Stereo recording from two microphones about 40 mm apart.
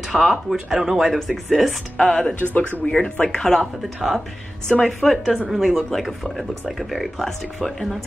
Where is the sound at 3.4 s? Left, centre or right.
Centre.